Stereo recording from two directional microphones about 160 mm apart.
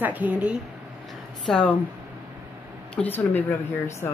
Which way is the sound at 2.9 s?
10° left (ahead or behind).